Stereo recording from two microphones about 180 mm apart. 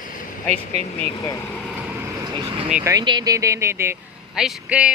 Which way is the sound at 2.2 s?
25° right (ahead or behind).